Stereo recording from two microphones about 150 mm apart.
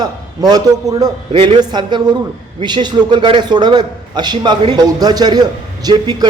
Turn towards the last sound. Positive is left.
turn(degrees=-25)  # may be behind; listen again after turning